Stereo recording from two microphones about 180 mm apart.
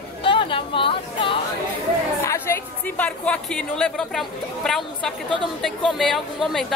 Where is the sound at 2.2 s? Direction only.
15° left (ahead or behind).